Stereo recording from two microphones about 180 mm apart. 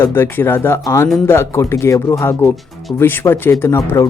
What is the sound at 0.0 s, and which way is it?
Speech, 15° left (ahead or behind).